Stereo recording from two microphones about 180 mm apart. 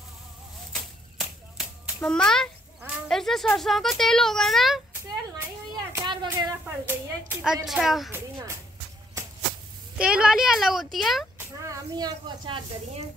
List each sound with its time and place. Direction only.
2.0 s speech: 5° left (ahead or behind)
5.9 s a sound: 20° right (ahead or behind)
6.6 s speech: 10° right (ahead or behind)
8.1 s a child's voice: 15° right (ahead or behind)
9.9 s speech: 5° right (ahead or behind)
11.3 s speech: 15° right (ahead or behind)